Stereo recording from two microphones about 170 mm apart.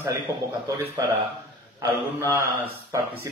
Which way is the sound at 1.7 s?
20° right (ahead or behind).